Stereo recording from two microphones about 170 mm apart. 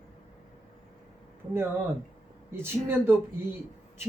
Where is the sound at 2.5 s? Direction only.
15° right (ahead or behind).